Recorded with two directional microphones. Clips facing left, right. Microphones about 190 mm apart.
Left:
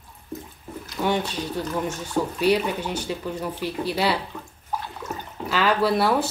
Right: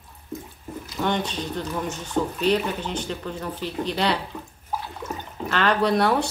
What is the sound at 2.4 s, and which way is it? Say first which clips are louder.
A woman's voice: left 3 dB; 10° left (ahead or behind).